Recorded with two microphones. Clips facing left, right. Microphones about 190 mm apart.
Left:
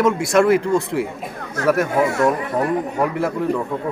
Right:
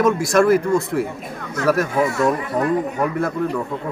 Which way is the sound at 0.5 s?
70° left (ahead or behind).